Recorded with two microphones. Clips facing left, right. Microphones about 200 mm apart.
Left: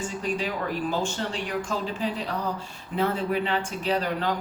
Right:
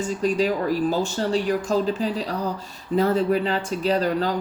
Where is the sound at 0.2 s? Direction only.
40° right (ahead or behind).